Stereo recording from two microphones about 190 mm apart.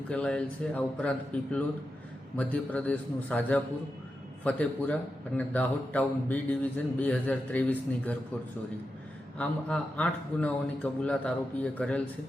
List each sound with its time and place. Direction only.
0.1 s a man's voice: 5° left (ahead or behind)
9.4 s speech: 5° left (ahead or behind)